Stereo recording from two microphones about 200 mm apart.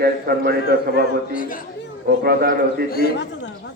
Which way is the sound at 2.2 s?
50° right (ahead or behind).